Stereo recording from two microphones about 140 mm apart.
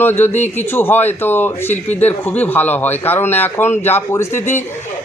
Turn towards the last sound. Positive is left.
turn(degrees=15)  # may be behind; listen again after turning